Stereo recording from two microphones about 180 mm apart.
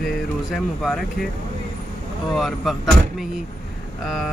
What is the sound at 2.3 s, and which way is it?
Speech, centre (ahead or behind).